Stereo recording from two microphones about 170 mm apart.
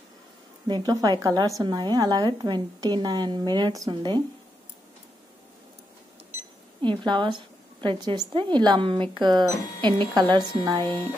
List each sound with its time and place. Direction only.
0.7 s a woman's voice: 25° right (ahead or behind)
6.8 s a woman's voice: 25° right (ahead or behind)